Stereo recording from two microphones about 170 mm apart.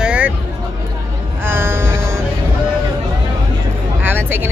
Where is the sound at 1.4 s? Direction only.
15° right (ahead or behind).